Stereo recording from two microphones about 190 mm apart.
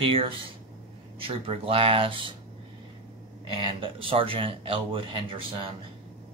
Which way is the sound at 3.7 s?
30° right (ahead or behind).